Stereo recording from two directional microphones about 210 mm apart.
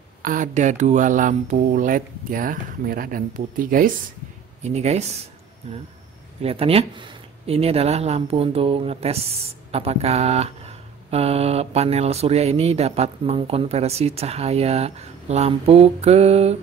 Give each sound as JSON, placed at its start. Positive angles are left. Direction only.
{"t": 0.2, "sound": "speech", "side_deg": -40}
{"t": 6.4, "sound": "speech", "side_deg": -30}